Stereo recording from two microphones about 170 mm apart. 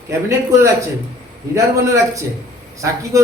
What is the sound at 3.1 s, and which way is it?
Speech, 20° right (ahead or behind).